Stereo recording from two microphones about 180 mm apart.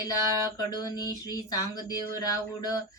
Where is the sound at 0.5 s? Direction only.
20° left (ahead or behind).